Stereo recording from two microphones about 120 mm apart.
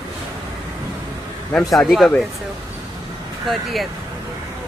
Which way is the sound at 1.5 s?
Centre (ahead or behind).